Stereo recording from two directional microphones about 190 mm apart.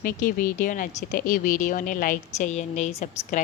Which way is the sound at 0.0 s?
50° left (ahead or behind).